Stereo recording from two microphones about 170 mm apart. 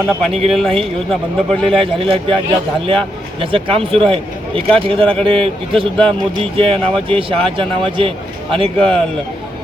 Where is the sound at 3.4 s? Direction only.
30° right (ahead or behind).